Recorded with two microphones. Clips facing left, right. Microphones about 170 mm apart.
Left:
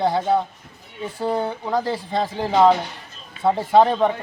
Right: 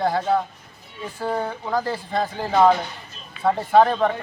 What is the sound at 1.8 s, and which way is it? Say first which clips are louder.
Speech: left 1 dB; 25° left (ahead or behind).